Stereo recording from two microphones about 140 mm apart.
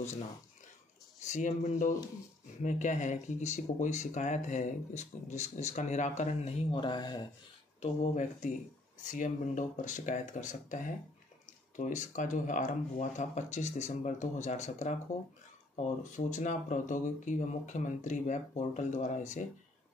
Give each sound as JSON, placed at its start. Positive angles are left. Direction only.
{"t": 1.2, "sound": "speech", "side_deg": 60}
{"t": 7.8, "sound": "speech", "side_deg": 55}